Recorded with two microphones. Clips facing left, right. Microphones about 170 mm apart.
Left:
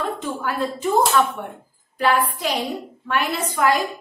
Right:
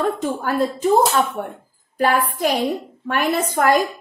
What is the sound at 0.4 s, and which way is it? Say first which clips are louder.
A woman's voice: right 4 dB; 45° right (ahead or behind).